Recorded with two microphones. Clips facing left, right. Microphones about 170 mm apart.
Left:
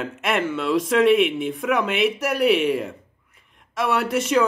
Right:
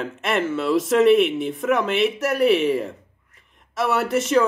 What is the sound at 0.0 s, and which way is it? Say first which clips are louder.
A man's voice: even; centre (ahead or behind).